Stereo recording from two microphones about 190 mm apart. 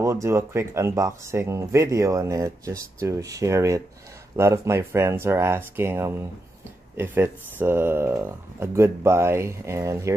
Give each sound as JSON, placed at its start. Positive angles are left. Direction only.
{"t": 0.0, "sound": "speech", "side_deg": -15}